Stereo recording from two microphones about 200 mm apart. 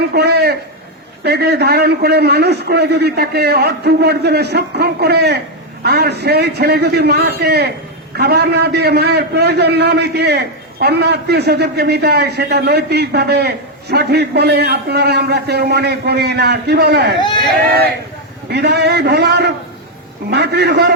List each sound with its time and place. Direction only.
0.1 s a man's voice: 55° right (ahead or behind)
17.2 s speech: 20° left (ahead or behind)
18.5 s a man's voice: 55° right (ahead or behind)